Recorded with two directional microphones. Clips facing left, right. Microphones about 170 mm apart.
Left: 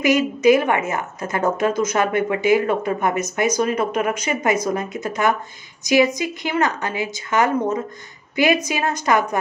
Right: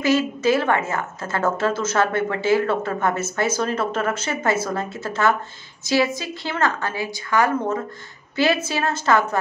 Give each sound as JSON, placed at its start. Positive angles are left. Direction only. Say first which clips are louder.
{"t": 0.0, "sound": "a woman's voice", "louder": "left 3 dB", "side_deg": 15}